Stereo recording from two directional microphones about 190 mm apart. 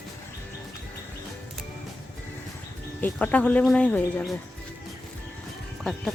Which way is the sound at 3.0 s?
10° left (ahead or behind).